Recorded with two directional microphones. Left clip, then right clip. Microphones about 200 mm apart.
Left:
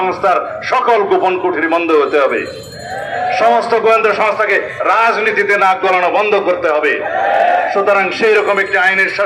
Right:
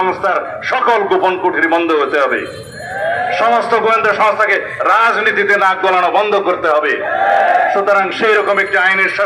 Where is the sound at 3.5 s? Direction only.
20° left (ahead or behind).